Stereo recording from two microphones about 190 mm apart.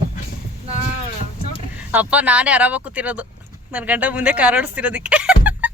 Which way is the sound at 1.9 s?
10° right (ahead or behind).